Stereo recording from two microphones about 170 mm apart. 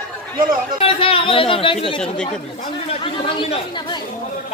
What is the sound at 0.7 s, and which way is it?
A man's voice, 35° left (ahead or behind).